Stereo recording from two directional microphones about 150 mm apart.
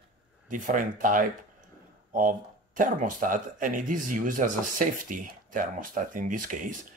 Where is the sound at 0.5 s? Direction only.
60° right (ahead or behind).